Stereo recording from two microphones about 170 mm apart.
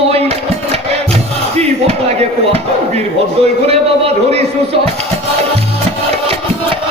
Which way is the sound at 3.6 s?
35° right (ahead or behind).